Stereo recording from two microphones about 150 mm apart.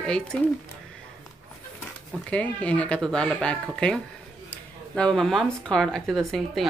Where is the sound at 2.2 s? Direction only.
10° left (ahead or behind).